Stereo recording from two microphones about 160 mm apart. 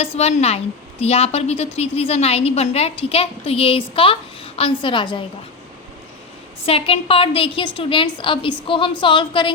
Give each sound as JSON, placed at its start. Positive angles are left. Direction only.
{"t": 0.0, "sound": "a woman's voice", "side_deg": 40}
{"t": 6.7, "sound": "a woman's voice", "side_deg": 35}